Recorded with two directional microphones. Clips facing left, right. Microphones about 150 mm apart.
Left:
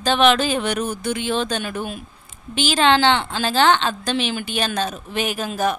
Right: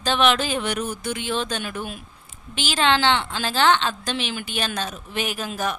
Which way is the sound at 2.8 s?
45° left (ahead or behind).